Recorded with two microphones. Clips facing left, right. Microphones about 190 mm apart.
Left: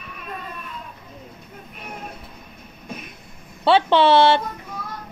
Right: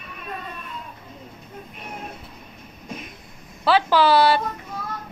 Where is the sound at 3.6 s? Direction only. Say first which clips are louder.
Left 2 dB; 25° left (ahead or behind).